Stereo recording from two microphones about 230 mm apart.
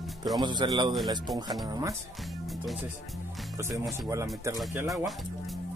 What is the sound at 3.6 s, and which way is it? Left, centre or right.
Speech, centre.